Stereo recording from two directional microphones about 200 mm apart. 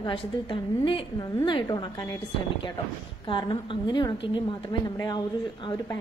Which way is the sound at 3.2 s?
25° left (ahead or behind).